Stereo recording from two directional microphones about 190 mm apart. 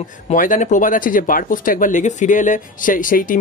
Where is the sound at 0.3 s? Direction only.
40° left (ahead or behind).